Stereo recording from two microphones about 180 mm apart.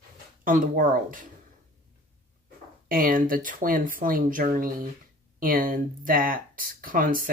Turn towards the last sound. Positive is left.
turn(degrees=-50)  # may be behind; listen again after turning